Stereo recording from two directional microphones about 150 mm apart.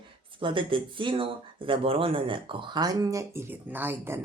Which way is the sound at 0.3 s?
35° right (ahead or behind).